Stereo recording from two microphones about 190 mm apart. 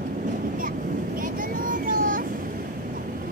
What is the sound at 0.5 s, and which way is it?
Vehicle, 45° right (ahead or behind).